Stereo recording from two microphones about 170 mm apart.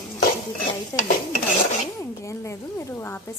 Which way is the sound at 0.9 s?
15° left (ahead or behind).